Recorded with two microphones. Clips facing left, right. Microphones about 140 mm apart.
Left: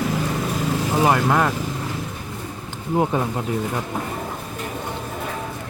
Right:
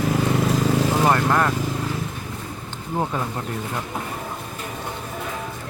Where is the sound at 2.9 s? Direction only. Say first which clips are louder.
Left 5 dB; 15° left (ahead or behind).